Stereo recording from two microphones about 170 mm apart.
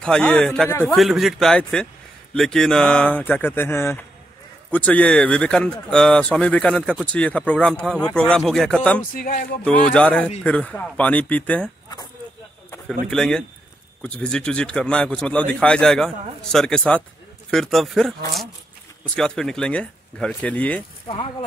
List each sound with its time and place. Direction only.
0.0 s speech: 5° left (ahead or behind)
9.1 s music: 55° left (ahead or behind)
9.9 s speech: 5° left (ahead or behind)
13.1 s speech: 5° left (ahead or behind)
21.1 s speech: 30° left (ahead or behind)